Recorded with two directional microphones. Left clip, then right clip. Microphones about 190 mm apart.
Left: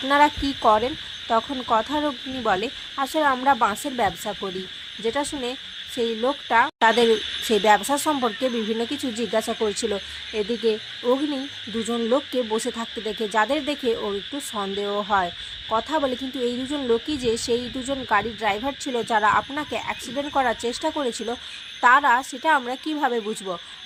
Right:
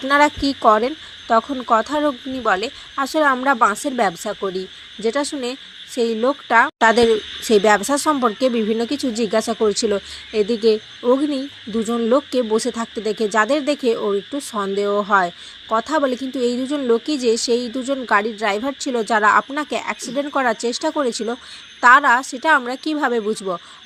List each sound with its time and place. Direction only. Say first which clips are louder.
0.1 s speech: right 3 dB; 20° right (ahead or behind)